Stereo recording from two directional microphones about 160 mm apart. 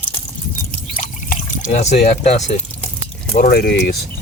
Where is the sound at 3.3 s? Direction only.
70° left (ahead or behind).